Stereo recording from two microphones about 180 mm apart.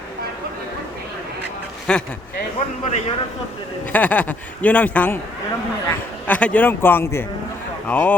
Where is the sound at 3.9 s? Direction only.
10° left (ahead or behind).